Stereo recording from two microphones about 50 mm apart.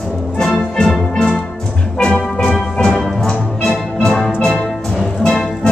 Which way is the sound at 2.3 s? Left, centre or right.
Centre.